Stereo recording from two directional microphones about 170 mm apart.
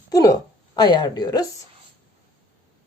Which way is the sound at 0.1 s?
20° left (ahead or behind).